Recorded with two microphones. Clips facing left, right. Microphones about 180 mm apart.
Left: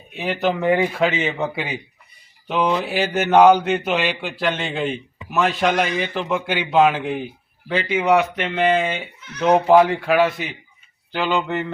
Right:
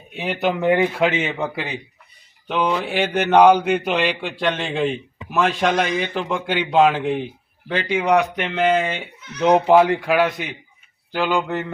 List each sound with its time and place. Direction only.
0.2 s a man's voice: 10° right (ahead or behind)
3.5 s speech: 10° right (ahead or behind)
3.9 s a man's voice: 5° left (ahead or behind)
9.4 s speech: 15° right (ahead or behind)